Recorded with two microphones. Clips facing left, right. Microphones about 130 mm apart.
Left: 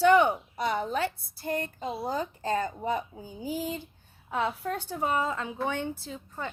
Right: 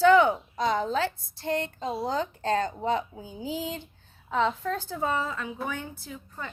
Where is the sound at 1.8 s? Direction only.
Centre (ahead or behind).